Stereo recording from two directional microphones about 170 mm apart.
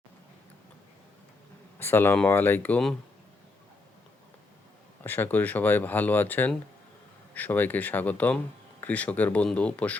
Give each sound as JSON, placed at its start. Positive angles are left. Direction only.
{"t": 1.8, "sound": "speech", "side_deg": 15}
{"t": 5.0, "sound": "speech", "side_deg": 10}